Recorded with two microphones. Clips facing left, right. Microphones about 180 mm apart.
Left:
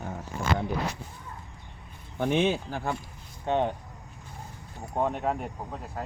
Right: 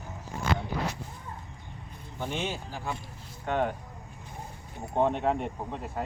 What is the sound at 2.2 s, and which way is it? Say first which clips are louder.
Speech: left 8 dB; 60° left (ahead or behind).